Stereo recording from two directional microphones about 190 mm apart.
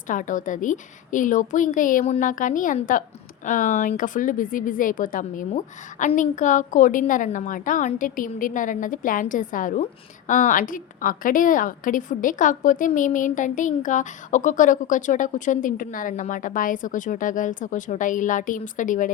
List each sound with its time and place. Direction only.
0.1 s a woman's voice: 45° left (ahead or behind)